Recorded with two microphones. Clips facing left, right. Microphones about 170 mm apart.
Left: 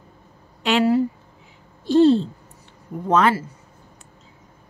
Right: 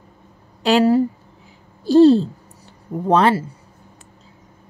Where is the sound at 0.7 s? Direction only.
40° right (ahead or behind).